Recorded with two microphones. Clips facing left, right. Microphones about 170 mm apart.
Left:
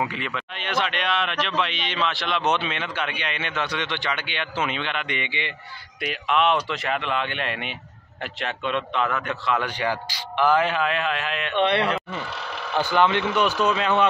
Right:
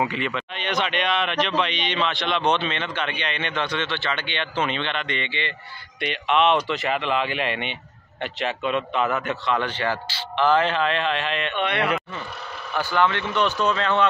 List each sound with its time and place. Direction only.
0.0 s a man's voice: centre (ahead or behind)
11.5 s speech: 30° left (ahead or behind)
12.7 s a man's voice: 20° left (ahead or behind)